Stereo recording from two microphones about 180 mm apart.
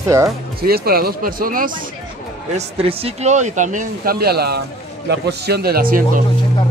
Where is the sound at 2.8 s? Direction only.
40° right (ahead or behind); by 6.0 s 55° right (ahead or behind).